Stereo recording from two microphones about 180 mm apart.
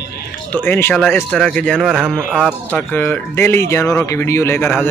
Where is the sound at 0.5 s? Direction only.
10° left (ahead or behind).